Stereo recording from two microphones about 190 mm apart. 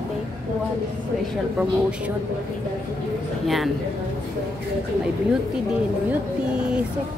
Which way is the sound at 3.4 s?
Centre (ahead or behind).